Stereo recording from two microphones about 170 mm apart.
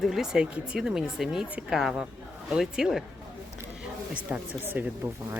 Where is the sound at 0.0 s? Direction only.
Centre (ahead or behind).